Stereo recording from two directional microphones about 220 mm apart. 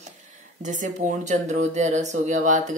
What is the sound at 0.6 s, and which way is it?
Speech, 35° right (ahead or behind).